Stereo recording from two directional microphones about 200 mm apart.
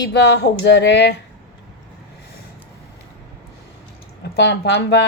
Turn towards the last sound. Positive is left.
turn(degrees=60)  # may be behind; listen again after turning